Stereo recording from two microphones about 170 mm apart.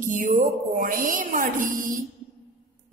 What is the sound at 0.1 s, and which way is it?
Speech, 50° right (ahead or behind).